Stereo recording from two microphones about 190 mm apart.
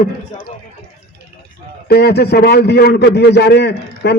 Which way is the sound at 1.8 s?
55° left (ahead or behind).